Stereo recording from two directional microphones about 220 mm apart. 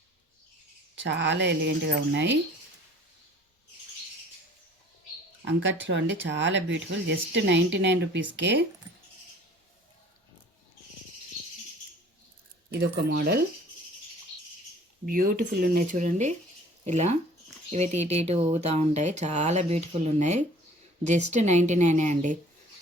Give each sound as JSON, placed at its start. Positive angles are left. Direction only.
{"t": 1.0, "sound": "speech", "side_deg": -55}
{"t": 5.5, "sound": "speech", "side_deg": -55}
{"t": 12.8, "sound": "speech", "side_deg": -45}
{"t": 15.0, "sound": "speech", "side_deg": -40}